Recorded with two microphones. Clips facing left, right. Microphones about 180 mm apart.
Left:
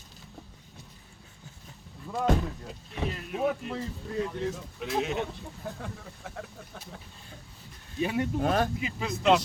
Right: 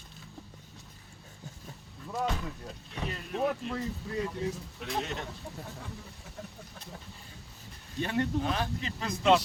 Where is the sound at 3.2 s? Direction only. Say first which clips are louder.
Even; 5° left (ahead or behind).